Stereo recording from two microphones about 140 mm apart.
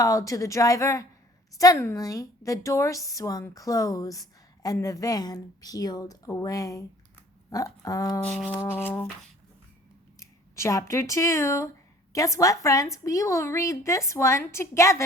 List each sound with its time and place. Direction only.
0.0 s a woman's voice: 25° left (ahead or behind)
8.2 s speech: 10° left (ahead or behind)
10.2 s a woman's voice: 20° left (ahead or behind)